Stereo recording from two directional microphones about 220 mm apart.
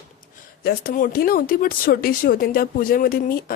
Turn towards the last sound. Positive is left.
turn(degrees=40)  # may be behind; listen again after turning